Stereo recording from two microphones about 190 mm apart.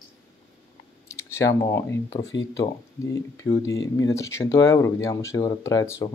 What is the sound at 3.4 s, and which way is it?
Speech, 15° left (ahead or behind).